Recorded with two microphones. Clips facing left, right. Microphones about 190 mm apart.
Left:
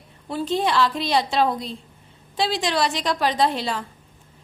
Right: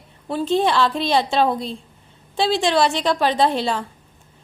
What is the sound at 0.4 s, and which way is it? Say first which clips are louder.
A woman's voice: right 3 dB; 25° right (ahead or behind).